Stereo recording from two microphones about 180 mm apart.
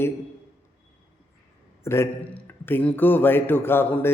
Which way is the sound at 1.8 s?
15° left (ahead or behind).